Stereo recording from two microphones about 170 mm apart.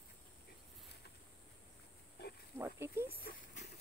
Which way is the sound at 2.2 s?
70° left (ahead or behind).